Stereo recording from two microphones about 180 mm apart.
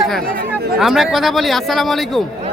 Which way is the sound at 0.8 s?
Centre (ahead or behind).